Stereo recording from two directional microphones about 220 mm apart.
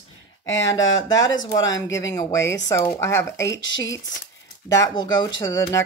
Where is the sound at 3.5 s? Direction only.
60° left (ahead or behind).